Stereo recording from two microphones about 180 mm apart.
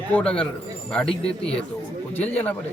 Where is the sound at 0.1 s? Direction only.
5° left (ahead or behind).